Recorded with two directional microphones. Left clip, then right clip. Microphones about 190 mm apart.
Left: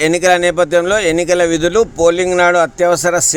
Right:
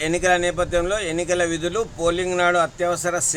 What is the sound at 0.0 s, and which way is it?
A man's voice, 45° left (ahead or behind).